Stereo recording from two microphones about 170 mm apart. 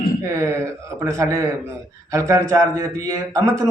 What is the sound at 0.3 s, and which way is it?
A man's voice, 15° right (ahead or behind).